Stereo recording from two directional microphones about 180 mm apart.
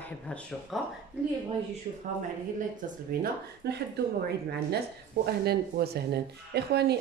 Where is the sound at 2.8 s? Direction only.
55° right (ahead or behind).